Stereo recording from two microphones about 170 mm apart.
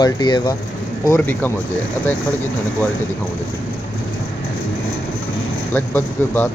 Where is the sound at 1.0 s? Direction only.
15° left (ahead or behind).